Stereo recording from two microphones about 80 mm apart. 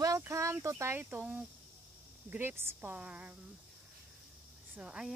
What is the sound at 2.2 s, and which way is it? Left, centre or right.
Speech, right.